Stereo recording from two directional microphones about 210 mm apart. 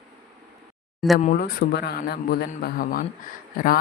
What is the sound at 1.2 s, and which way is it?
Speech, 40° left (ahead or behind).